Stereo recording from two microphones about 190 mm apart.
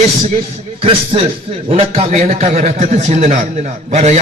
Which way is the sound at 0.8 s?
30° right (ahead or behind).